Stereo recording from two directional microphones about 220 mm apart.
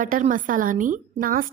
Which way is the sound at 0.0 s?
35° right (ahead or behind).